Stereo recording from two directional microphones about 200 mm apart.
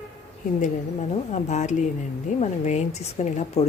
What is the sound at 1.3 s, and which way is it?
Speech, 35° left (ahead or behind).